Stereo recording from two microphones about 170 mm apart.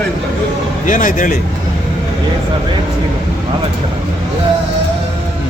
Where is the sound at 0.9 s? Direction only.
50° left (ahead or behind).